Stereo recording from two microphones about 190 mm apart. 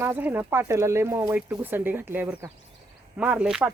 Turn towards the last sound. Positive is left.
turn(degrees=-5)  # may be behind; listen again after turning